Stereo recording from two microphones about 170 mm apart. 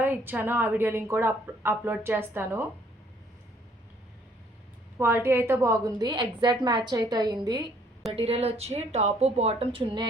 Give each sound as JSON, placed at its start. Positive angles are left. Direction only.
{"t": 0.0, "sound": "a woman's voice", "side_deg": -10}
{"t": 4.9, "sound": "a woman's voice", "side_deg": -15}
{"t": 8.1, "sound": "speech", "side_deg": -35}